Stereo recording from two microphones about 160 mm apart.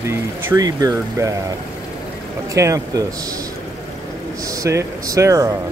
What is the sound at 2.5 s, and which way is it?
Speech, 20° right (ahead or behind).